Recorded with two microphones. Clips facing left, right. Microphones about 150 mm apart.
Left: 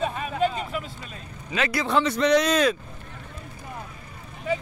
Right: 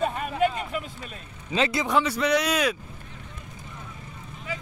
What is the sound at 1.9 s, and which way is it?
Speech, 10° right (ahead or behind).